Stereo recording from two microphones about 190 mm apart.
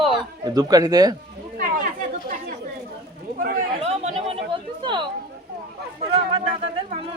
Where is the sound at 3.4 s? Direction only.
35° right (ahead or behind).